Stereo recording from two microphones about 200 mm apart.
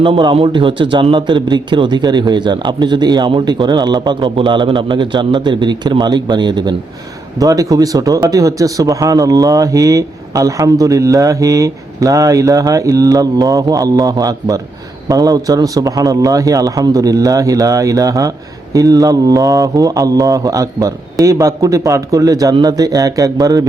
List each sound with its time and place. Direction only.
0.0 s a man's voice: 25° right (ahead or behind)